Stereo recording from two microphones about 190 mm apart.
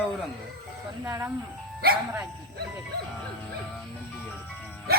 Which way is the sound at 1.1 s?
15° right (ahead or behind).